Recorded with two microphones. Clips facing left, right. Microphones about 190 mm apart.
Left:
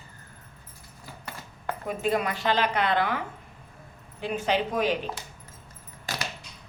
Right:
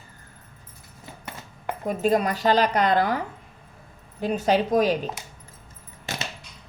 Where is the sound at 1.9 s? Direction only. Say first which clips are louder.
Right 5 dB; 40° right (ahead or behind).